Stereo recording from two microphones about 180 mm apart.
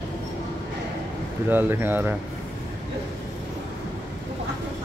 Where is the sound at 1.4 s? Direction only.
10° right (ahead or behind).